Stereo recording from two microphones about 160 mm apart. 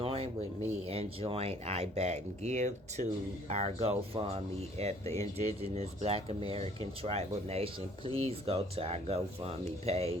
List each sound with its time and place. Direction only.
0.0 s rub: 35° right (ahead or behind)
0.9 s speech: 40° right (ahead or behind)